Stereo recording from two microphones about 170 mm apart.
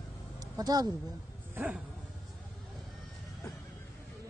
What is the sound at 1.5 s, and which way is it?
Dog, 10° right (ahead or behind).